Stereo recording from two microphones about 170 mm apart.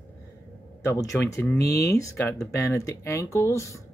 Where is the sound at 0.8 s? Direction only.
15° left (ahead or behind).